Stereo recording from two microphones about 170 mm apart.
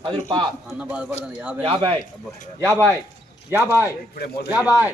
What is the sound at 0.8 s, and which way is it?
Speech, 5° right (ahead or behind).